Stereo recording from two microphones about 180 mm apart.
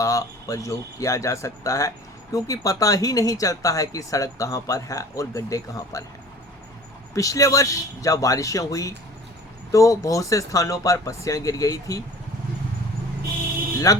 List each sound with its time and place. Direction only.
0.0 s speech: 20° left (ahead or behind)
7.1 s speech: 20° left (ahead or behind)
13.9 s speech: 20° left (ahead or behind)